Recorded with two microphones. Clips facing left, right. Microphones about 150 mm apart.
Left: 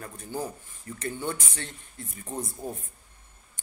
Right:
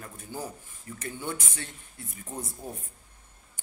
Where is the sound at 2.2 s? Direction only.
20° left (ahead or behind).